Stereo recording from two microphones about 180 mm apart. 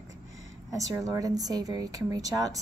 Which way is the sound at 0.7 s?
20° right (ahead or behind).